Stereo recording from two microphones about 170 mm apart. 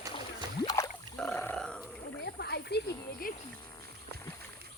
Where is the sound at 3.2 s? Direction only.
55° left (ahead or behind).